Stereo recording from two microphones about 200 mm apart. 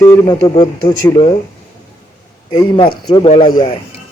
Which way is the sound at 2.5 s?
25° left (ahead or behind).